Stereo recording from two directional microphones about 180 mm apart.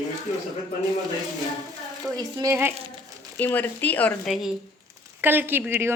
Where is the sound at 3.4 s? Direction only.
10° left (ahead or behind).